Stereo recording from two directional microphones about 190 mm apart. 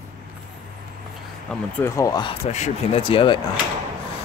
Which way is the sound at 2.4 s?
35° left (ahead or behind).